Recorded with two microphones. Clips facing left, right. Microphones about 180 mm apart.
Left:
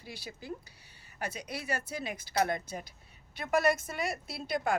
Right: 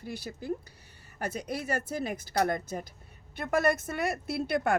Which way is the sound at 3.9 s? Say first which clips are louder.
Right 5 dB; 60° right (ahead or behind).